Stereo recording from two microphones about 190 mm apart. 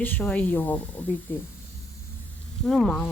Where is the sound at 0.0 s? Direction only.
10° left (ahead or behind).